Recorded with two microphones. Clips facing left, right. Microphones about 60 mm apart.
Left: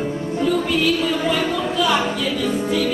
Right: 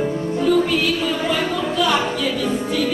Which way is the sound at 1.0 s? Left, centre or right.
Centre.